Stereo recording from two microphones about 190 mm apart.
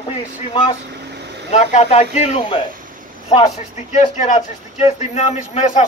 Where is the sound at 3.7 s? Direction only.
40° left (ahead or behind).